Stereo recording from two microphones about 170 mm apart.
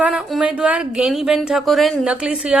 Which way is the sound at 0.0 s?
5° right (ahead or behind).